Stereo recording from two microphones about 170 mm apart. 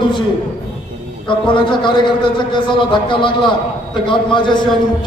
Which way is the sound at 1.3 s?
30° left (ahead or behind).